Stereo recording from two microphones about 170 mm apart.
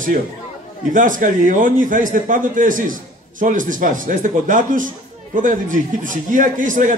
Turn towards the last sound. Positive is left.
turn(degrees=-50)  # may be behind; listen again after turning